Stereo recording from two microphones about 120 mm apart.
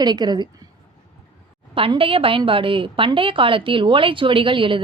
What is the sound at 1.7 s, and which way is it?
A woman's voice, 50° right (ahead or behind).